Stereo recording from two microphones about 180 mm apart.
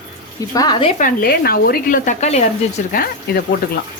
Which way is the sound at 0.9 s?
50° left (ahead or behind).